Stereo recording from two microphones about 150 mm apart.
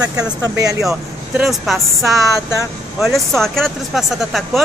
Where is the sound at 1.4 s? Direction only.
Centre (ahead or behind).